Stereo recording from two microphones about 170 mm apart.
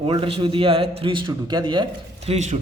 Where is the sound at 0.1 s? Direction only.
35° right (ahead or behind).